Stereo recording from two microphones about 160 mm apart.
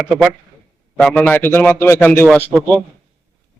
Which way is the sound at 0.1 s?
5° right (ahead or behind).